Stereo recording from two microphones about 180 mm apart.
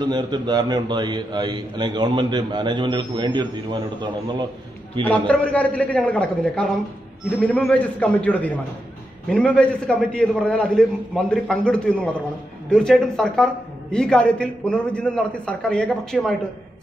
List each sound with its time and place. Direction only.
0.0 s a man's voice: 25° right (ahead or behind)
5.0 s a man's voice: 5° left (ahead or behind)